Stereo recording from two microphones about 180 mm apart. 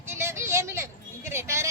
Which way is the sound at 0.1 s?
15° right (ahead or behind).